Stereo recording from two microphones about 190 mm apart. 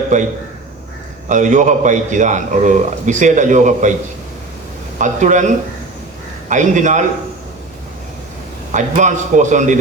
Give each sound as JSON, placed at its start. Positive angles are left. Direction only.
{"t": 1.3, "sound": "a man's voice", "side_deg": -40}
{"t": 4.9, "sound": "a man's voice", "side_deg": -40}
{"t": 8.7, "sound": "a man's voice", "side_deg": -40}